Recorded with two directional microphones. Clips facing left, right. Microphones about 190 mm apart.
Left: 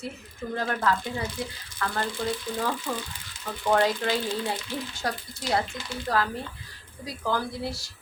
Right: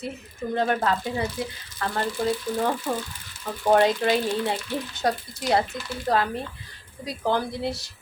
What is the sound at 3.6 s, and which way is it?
Speech, 20° right (ahead or behind).